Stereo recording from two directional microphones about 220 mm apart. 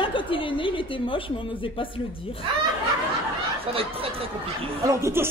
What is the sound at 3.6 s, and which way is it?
Speech, 25° right (ahead or behind).